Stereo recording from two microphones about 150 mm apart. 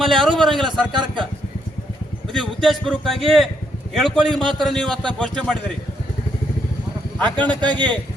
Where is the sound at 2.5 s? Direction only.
5° left (ahead or behind).